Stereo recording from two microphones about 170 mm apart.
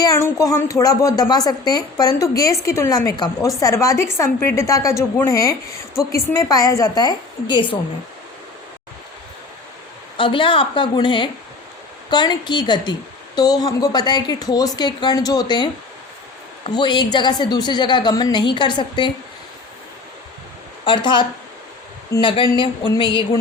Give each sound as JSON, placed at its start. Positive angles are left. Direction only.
{"t": 0.0, "sound": "a woman's voice", "side_deg": 20}
{"t": 10.2, "sound": "a woman's voice", "side_deg": 30}
{"t": 20.8, "sound": "a woman's voice", "side_deg": 30}